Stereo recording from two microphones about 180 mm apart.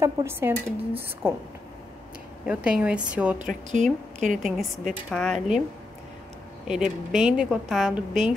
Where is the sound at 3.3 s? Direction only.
45° right (ahead or behind).